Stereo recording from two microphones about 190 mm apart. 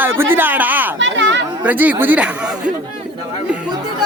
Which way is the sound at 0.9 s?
75° right (ahead or behind).